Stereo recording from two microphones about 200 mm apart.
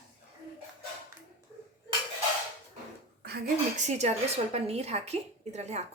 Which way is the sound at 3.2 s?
50° right (ahead or behind).